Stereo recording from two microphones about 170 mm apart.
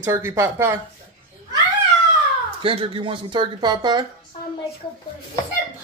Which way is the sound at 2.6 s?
30° right (ahead or behind).